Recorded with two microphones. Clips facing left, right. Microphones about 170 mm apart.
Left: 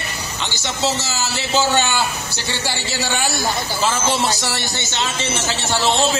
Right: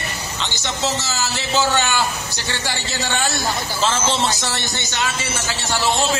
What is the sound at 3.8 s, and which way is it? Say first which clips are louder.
Speech: even; 10° left (ahead or behind).